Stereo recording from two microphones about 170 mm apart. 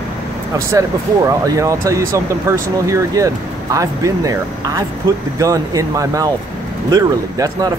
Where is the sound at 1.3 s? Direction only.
20° right (ahead or behind).